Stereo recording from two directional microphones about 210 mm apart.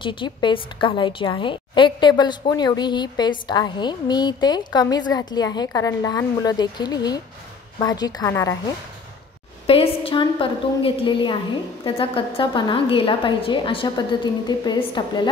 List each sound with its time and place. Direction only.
0.0 s a woman's voice: 25° left (ahead or behind)
9.7 s a woman's voice: 30° left (ahead or behind)